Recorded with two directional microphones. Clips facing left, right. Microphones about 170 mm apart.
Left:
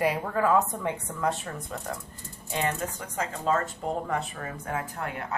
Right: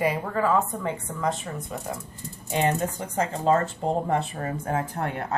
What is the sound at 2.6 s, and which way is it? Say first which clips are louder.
Speech: right 6 dB; 30° right (ahead or behind).